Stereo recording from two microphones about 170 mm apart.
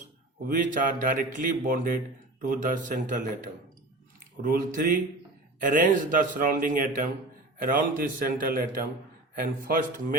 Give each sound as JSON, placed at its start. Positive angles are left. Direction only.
{"t": 0.4, "sound": "a man's voice", "side_deg": -50}